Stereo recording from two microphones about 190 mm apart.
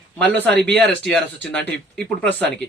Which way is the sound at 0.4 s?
65° right (ahead or behind).